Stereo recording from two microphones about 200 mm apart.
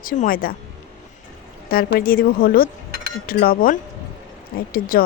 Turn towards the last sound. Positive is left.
turn(degrees=45)  # may be behind; listen again after turning